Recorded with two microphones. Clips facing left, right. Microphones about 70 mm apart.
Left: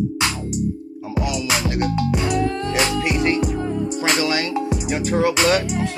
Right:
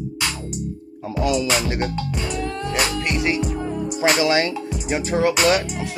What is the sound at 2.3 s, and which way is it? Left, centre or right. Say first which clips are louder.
Music: left 4 dB; centre.